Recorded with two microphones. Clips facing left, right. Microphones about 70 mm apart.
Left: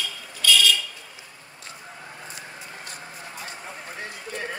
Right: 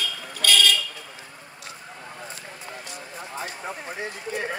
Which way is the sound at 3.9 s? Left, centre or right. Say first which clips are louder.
Right 2 dB; centre.